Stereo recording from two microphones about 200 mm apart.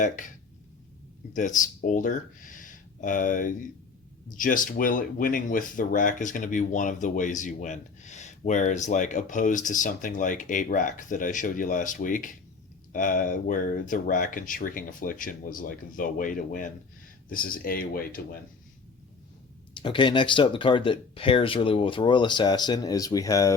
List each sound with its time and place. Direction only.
1.3 s speech: 40° left (ahead or behind)
19.7 s speech: 25° left (ahead or behind)